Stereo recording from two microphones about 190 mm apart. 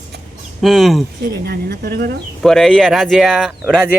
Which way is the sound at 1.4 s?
55° right (ahead or behind).